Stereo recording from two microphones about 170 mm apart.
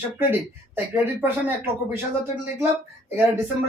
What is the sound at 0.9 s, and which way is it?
Speech, 10° right (ahead or behind).